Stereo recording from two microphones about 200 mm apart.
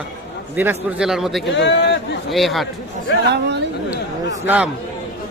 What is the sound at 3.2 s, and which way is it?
Speech, 55° right (ahead or behind).